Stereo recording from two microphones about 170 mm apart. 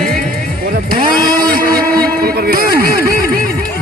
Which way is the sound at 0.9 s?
60° right (ahead or behind).